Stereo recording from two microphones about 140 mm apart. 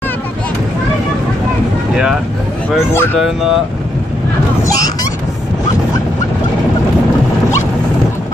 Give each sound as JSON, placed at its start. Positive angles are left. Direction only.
{"t": 2.9, "sound": "speech", "side_deg": 15}